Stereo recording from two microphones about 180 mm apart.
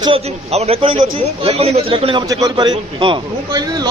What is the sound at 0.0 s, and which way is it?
A man's voice, 35° right (ahead or behind).